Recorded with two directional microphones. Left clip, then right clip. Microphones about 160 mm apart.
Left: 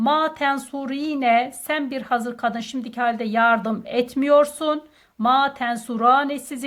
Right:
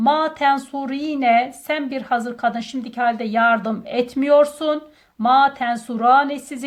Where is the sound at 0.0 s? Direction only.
35° left (ahead or behind).